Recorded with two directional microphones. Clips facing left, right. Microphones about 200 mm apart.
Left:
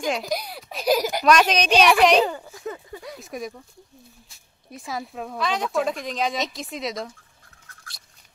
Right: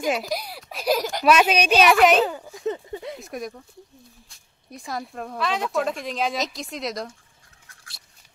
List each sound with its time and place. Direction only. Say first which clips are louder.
0.0 s a woman's voice: right 1 dB; 5° right (ahead or behind)
2.5 s a sound: right 6 dB; 25° right (ahead or behind)
3.2 s speech: even; centre (ahead or behind)
4.6 s speech: even; centre (ahead or behind)